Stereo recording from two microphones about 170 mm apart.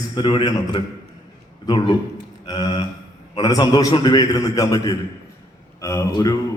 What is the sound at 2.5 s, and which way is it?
A man's voice, 20° left (ahead or behind).